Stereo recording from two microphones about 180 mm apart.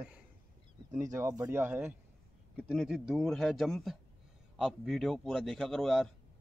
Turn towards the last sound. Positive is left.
turn(degrees=0)  # may be behind; listen again after turning